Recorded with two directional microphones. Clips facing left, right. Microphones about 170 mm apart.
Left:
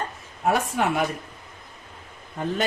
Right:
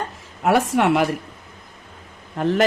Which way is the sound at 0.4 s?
80° right.